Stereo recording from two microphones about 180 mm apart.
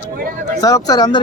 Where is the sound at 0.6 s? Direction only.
20° left (ahead or behind).